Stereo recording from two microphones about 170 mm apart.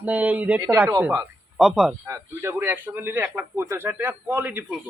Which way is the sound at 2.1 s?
15° right (ahead or behind).